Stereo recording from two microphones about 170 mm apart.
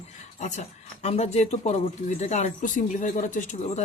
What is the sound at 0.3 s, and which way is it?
Speech, 45° left (ahead or behind).